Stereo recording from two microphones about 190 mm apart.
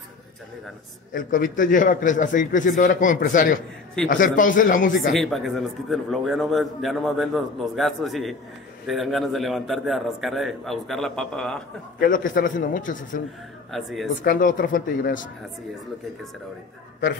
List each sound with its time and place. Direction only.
1.1 s a man's voice: 45° left (ahead or behind)
5.1 s a man's voice: centre (ahead or behind)
12.0 s a man's voice: 45° left (ahead or behind)
13.7 s a man's voice: centre (ahead or behind)
14.2 s a man's voice: 45° left (ahead or behind)